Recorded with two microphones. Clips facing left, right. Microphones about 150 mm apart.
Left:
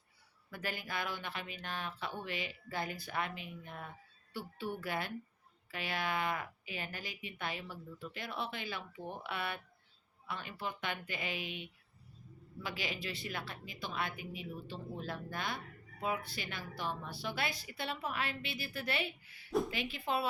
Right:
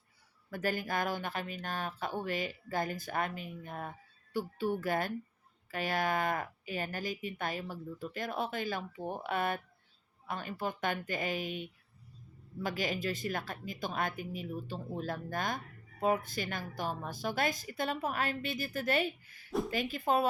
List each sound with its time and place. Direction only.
0.5 s speech: 45° right (ahead or behind)